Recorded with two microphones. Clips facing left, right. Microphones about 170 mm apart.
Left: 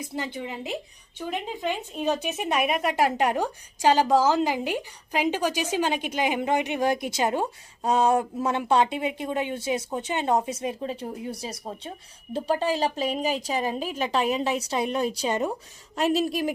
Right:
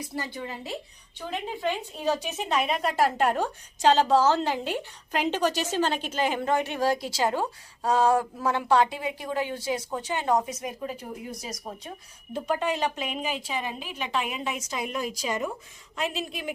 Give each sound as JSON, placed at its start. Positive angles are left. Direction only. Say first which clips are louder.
{"t": 0.3, "sound": "a woman's voice", "louder": "left 3 dB", "side_deg": 20}